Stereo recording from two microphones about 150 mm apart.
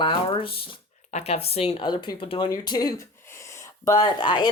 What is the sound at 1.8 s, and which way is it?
Speech, 30° left (ahead or behind).